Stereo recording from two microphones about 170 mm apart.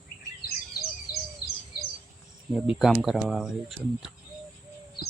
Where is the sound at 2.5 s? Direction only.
Centre (ahead or behind).